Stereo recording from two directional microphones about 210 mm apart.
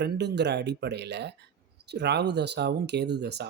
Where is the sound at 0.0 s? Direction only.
55° right (ahead or behind).